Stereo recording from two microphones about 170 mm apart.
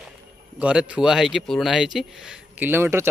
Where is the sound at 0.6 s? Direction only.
5° right (ahead or behind).